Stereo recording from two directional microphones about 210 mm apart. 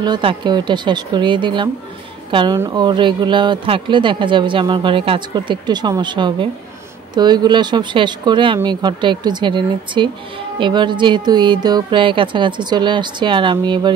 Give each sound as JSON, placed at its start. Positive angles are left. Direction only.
{"t": 0.0, "sound": "speech", "side_deg": -25}